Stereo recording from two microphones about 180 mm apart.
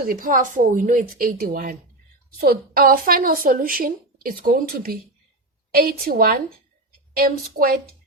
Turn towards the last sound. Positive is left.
turn(degrees=-55)  # may be behind; listen again after turning